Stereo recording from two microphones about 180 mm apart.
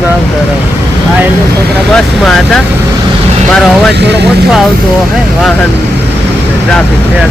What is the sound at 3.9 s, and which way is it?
Speech, 70° right (ahead or behind).